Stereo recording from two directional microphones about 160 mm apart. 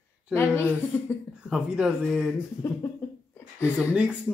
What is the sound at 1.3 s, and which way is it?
Speech, 5° right (ahead or behind).